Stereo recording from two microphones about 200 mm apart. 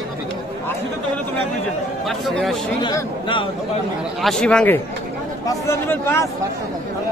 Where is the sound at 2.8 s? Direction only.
20° left (ahead or behind).